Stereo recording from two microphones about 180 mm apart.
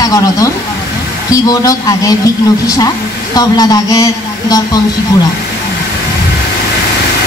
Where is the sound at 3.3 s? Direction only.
20° left (ahead or behind).